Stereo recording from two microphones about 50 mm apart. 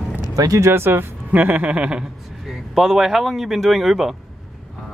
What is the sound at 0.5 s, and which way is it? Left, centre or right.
Speech, right.